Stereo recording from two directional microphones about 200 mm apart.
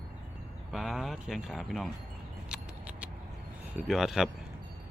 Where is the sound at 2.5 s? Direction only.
5° right (ahead or behind).